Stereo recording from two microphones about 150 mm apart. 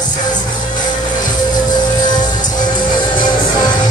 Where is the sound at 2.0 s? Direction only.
30° left (ahead or behind).